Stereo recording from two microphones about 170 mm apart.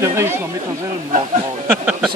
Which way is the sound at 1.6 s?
5° right (ahead or behind).